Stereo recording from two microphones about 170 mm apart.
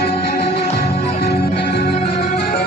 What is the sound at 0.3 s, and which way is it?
Music, 60° left (ahead or behind).